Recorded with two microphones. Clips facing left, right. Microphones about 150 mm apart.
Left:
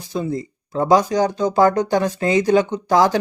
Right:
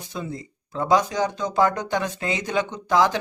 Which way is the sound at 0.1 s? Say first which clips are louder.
Left 9 dB; 35° left (ahead or behind).